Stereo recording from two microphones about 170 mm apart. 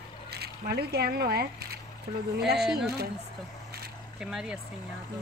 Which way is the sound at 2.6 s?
Centre (ahead or behind).